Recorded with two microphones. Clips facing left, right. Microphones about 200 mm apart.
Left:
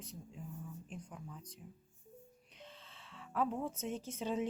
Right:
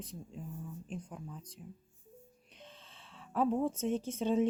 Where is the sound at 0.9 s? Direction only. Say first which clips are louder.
Right 5 dB; 30° right (ahead or behind).